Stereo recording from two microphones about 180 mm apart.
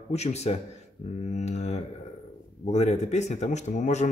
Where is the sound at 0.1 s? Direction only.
35° left (ahead or behind).